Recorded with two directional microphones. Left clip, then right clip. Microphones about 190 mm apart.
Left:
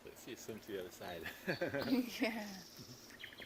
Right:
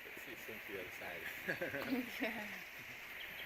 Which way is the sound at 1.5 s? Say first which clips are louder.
Left 3 dB; 35° right (ahead or behind).